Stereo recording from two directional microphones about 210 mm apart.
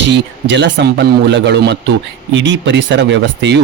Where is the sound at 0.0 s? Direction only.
60° right (ahead or behind).